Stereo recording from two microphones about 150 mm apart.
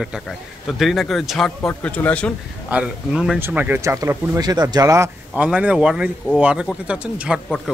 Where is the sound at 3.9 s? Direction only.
25° right (ahead or behind).